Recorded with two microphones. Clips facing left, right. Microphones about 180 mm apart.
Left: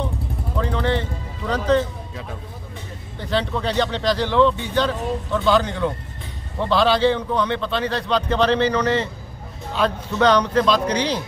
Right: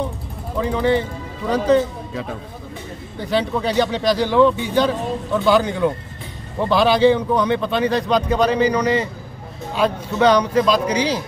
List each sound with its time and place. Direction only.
0.6 s speech: 10° right (ahead or behind)
3.2 s speech: 10° right (ahead or behind)